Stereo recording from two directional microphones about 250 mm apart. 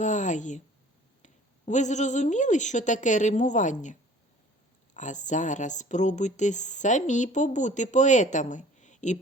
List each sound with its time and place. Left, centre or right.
0.0 s speech: left
4.9 s speech: left